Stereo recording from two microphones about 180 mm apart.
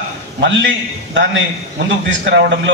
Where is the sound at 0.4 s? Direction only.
80° right.